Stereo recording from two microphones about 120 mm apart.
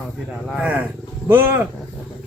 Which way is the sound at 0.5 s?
10° right (ahead or behind).